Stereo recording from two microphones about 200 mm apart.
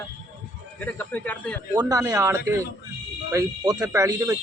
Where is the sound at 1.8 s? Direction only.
15° right (ahead or behind).